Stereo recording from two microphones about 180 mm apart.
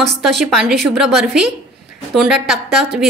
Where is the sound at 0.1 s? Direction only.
Centre (ahead or behind).